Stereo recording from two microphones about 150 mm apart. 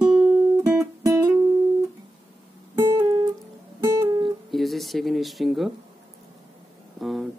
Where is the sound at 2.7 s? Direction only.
20° right (ahead or behind).